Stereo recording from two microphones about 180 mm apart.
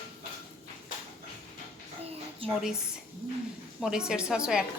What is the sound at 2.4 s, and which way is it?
Speech, 30° right (ahead or behind).